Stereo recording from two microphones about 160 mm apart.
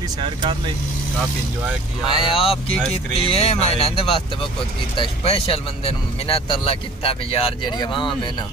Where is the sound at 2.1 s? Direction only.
30° left (ahead or behind).